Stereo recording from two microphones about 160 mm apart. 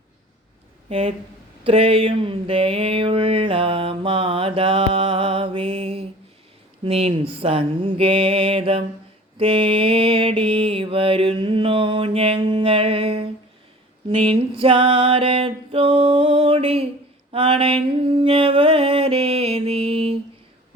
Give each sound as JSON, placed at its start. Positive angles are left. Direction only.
{"t": 0.9, "sound": "speech", "side_deg": -35}
{"t": 1.6, "sound": "a sound", "side_deg": -35}
{"t": 9.4, "sound": "mantra", "side_deg": -35}
{"t": 14.2, "sound": "music", "side_deg": -35}